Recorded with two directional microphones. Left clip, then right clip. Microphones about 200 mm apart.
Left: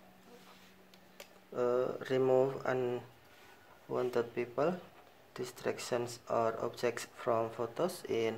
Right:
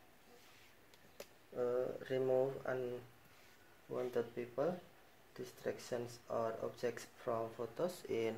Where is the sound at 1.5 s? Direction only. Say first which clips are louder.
Left 6 dB; 25° left (ahead or behind).